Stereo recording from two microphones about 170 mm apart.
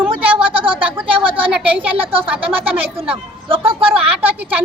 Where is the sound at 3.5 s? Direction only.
30° right (ahead or behind).